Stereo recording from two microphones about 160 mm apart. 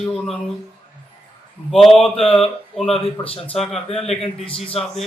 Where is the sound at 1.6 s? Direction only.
Centre (ahead or behind).